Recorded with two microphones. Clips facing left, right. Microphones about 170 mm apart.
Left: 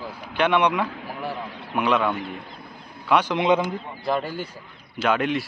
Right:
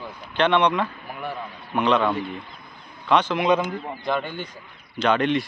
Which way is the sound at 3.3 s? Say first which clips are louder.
Even; 20° left (ahead or behind).